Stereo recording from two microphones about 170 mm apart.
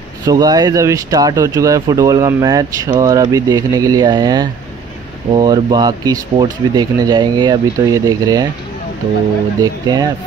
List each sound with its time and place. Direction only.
0.2 s speech: 20° right (ahead or behind)
9.6 s speech: 25° right (ahead or behind)